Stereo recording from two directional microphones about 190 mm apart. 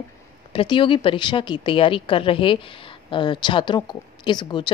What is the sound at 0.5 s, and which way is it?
A woman's voice, 25° left (ahead or behind).